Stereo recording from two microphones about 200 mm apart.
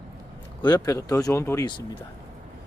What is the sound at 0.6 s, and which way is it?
Speech, 15° left (ahead or behind).